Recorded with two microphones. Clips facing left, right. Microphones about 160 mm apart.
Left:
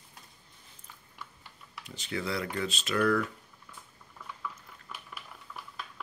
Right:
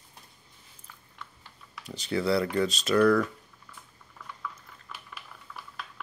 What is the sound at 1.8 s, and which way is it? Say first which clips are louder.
Speech: right 8 dB; 35° right (ahead or behind).